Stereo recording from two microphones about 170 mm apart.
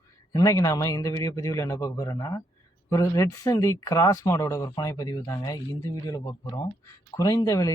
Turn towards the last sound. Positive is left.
turn(degrees=20)  # may be behind; listen again after turning